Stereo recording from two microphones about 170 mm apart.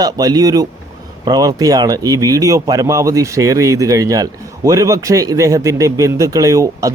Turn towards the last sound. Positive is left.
turn(degrees=-20)  # may be behind; listen again after turning